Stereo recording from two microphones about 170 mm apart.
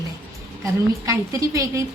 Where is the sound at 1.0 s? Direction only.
20° right (ahead or behind).